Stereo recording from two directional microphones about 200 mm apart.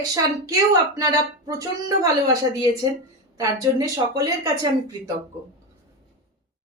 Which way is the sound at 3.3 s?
15° right (ahead or behind).